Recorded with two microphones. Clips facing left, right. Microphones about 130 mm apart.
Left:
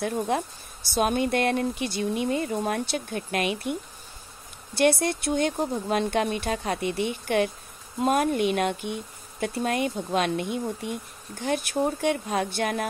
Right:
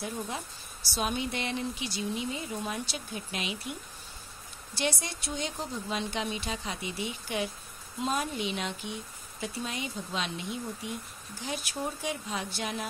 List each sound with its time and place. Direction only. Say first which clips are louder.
0.0 s speech: left 10 dB; 60° left (ahead or behind)
4.7 s speech: left 11 dB; 60° left (ahead or behind)